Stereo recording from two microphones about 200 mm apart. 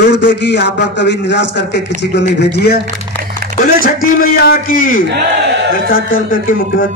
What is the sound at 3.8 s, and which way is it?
A man's voice, 45° left (ahead or behind).